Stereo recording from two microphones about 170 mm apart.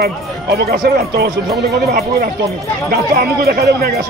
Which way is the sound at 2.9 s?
65° right (ahead or behind).